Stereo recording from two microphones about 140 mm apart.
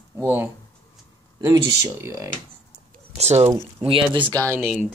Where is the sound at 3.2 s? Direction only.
50° right (ahead or behind).